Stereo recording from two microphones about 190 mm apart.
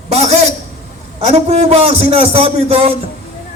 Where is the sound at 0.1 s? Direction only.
35° right (ahead or behind).